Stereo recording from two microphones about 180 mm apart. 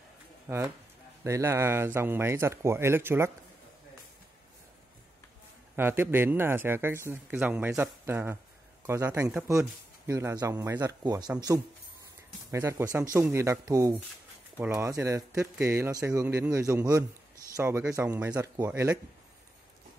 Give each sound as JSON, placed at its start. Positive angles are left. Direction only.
{"t": 0.5, "sound": "speech", "side_deg": -5}
{"t": 5.8, "sound": "speech", "side_deg": -10}